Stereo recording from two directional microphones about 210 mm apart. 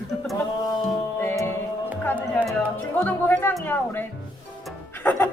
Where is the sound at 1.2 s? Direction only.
15° left (ahead or behind).